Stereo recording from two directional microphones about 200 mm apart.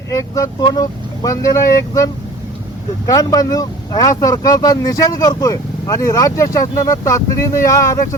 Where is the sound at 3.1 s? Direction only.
20° left (ahead or behind).